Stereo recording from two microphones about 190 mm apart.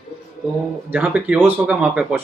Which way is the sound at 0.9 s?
5° right (ahead or behind).